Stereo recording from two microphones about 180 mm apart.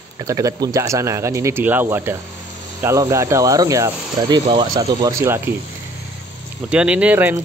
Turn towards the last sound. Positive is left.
turn(degrees=-10)  # may be behind; listen again after turning